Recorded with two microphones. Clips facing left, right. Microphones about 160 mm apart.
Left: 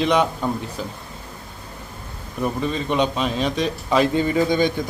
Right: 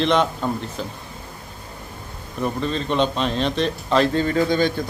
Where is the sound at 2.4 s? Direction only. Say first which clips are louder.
Even; 10° left (ahead or behind).